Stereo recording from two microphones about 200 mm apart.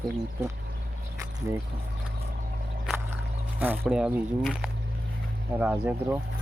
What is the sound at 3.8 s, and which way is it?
Speech, centre (ahead or behind).